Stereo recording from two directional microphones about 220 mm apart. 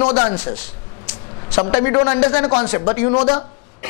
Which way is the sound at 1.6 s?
20° left (ahead or behind).